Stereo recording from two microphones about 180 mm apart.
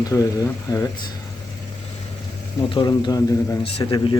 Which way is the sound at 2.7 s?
25° left (ahead or behind).